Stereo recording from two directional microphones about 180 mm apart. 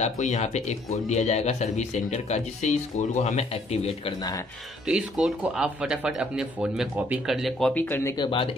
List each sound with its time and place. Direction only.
0.0 s speech: 40° left (ahead or behind)
4.8 s speech: 5° right (ahead or behind); by 8.1 s 10° left (ahead or behind)
8.2 s speech: 30° left (ahead or behind)